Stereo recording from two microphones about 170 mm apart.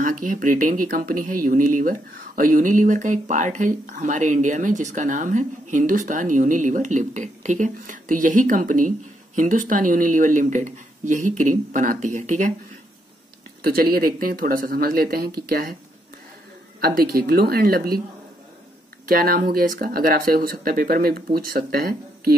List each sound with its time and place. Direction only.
0.0 s speech: 50° right (ahead or behind)
13.9 s speech: 60° right (ahead or behind)
16.8 s speech: 60° right (ahead or behind)
19.0 s speech: 60° right (ahead or behind)